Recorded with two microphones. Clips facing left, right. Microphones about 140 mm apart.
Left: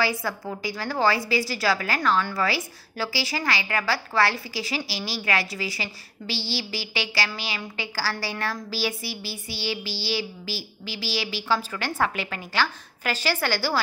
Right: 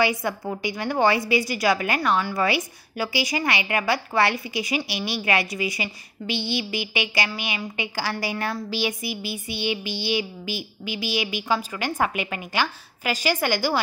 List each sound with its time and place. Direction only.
0.0 s a woman's voice: 20° right (ahead or behind)